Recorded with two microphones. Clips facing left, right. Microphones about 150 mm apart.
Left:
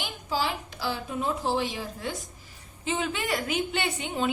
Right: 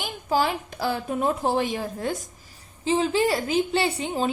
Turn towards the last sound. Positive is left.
turn(degrees=-35)  # may be behind; listen again after turning